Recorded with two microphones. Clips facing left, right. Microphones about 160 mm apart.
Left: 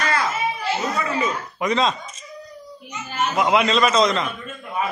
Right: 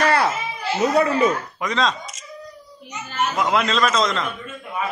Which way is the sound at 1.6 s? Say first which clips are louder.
Left 4 dB; 5° left (ahead or behind).